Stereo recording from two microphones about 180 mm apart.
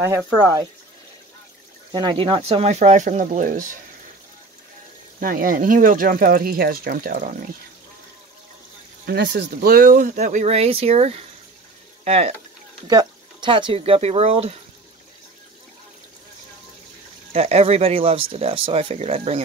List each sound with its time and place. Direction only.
1.9 s speech: 25° right (ahead or behind); by 3.7 s 45° right (ahead or behind)
5.2 s speech: 50° right (ahead or behind)
9.0 s speech: 70° right (ahead or behind); by 12.4 s 35° right (ahead or behind)
12.8 s speech: 25° right (ahead or behind)
17.3 s speech: 35° right (ahead or behind)